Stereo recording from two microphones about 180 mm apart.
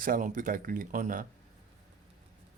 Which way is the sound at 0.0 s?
50° right (ahead or behind).